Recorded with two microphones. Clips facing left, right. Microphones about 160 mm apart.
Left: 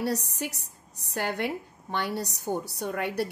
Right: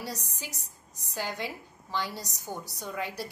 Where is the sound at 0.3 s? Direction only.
65° left (ahead or behind).